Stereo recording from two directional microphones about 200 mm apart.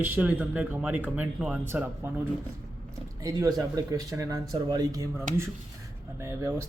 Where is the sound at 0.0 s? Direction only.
10° right (ahead or behind).